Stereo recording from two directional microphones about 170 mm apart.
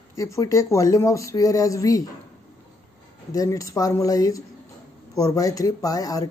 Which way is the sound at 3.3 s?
20° left (ahead or behind).